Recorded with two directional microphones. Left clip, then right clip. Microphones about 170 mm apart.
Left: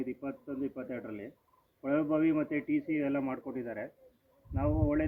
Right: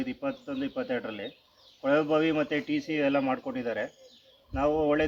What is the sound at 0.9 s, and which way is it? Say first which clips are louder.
Speech: right 8 dB; 30° right (ahead or behind).